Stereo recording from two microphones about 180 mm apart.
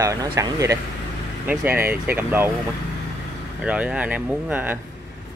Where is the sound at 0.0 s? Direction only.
15° right (ahead or behind).